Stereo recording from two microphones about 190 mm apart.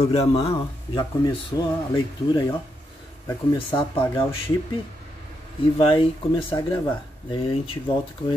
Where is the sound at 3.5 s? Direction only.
25° left (ahead or behind).